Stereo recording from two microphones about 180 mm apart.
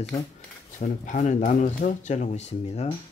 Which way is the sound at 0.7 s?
45° left (ahead or behind).